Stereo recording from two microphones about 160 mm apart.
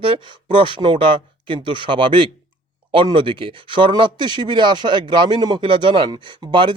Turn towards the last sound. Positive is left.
turn(degrees=-30)  # may be behind; listen again after turning